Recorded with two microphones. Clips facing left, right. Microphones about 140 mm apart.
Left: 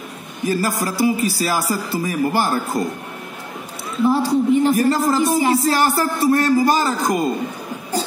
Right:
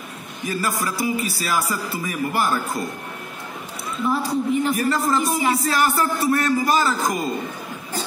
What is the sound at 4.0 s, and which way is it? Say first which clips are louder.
A man's voice: left 6 dB; 30° left (ahead or behind).